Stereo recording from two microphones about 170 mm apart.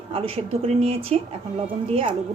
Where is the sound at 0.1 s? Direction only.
35° right (ahead or behind).